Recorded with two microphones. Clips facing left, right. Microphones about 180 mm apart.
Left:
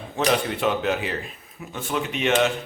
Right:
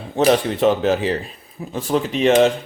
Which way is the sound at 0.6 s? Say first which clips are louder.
Right 7 dB; 35° right (ahead or behind).